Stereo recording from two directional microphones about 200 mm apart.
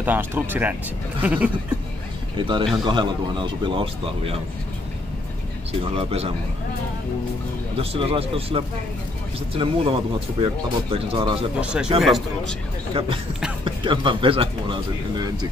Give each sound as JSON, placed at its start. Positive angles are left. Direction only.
{"t": 0.0, "sound": "speech", "side_deg": -10}
{"t": 2.3, "sound": "a man's voice", "side_deg": -25}
{"t": 5.8, "sound": "a man's voice", "side_deg": -30}
{"t": 7.7, "sound": "a man's voice", "side_deg": -30}
{"t": 11.6, "sound": "speech", "side_deg": -5}
{"t": 13.8, "sound": "a man's voice", "side_deg": -25}